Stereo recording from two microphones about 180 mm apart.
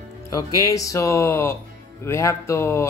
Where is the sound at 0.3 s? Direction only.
20° left (ahead or behind).